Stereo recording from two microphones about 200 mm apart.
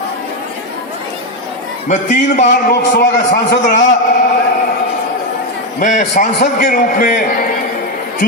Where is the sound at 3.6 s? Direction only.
40° left (ahead or behind).